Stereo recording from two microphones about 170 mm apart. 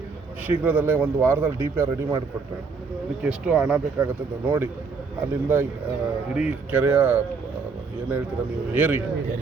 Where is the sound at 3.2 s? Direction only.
5° right (ahead or behind).